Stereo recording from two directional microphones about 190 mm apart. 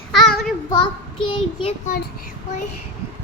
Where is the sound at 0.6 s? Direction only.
25° left (ahead or behind).